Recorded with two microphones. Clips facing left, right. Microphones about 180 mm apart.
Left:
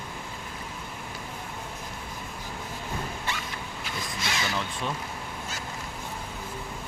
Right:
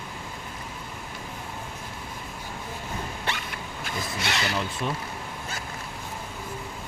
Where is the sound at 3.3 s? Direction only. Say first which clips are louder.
Right 4 dB; 65° right (ahead or behind).